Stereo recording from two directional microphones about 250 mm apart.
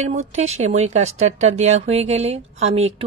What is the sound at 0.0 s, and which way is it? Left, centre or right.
Speech, right.